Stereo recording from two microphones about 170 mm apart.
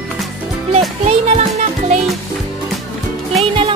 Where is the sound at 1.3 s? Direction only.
45° right (ahead or behind).